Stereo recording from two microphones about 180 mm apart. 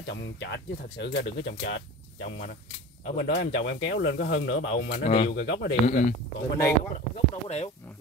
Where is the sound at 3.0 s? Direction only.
70° left (ahead or behind).